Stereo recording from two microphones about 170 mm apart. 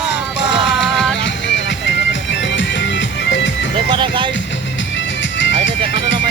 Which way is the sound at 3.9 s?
30° right (ahead or behind).